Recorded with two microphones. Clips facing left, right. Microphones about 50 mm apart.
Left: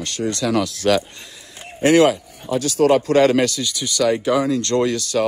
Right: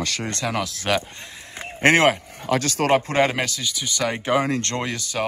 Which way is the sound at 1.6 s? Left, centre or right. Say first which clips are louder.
Left 3 dB; right.